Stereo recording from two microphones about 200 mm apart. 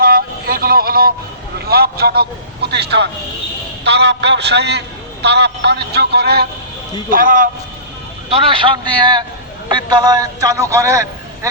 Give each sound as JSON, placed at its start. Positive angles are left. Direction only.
{"t": 0.0, "sound": "vehicle", "side_deg": -45}
{"t": 1.5, "sound": "a man's voice", "side_deg": -50}
{"t": 8.3, "sound": "a man's voice", "side_deg": -25}